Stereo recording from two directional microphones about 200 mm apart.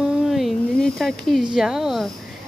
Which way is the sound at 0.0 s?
Centre (ahead or behind).